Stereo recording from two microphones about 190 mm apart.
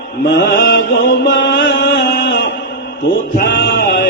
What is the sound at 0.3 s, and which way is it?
Mantra, 55° left (ahead or behind).